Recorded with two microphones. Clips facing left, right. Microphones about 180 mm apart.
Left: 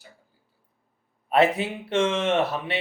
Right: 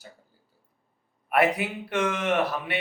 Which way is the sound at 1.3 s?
25° left (ahead or behind).